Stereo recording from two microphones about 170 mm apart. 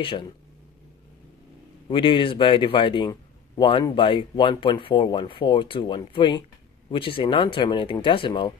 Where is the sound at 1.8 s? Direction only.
30° left (ahead or behind).